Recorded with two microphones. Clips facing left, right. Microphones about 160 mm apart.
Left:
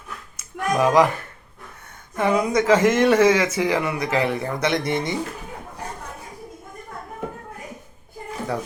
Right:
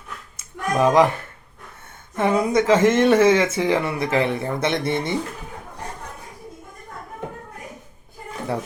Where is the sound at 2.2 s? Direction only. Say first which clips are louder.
Right 1 dB; 25° right (ahead or behind).